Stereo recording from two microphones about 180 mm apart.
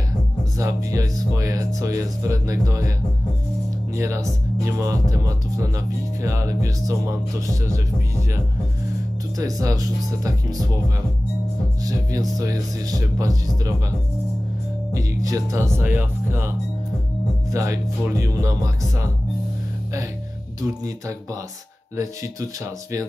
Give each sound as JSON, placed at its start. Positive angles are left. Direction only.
{"t": 0.6, "sound": "speech", "side_deg": -20}
{"t": 3.9, "sound": "speech", "side_deg": -15}
{"t": 9.4, "sound": "speech", "side_deg": -20}
{"t": 11.8, "sound": "speech", "side_deg": -20}
{"t": 15.0, "sound": "speech", "side_deg": -20}
{"t": 20.6, "sound": "speech", "side_deg": -20}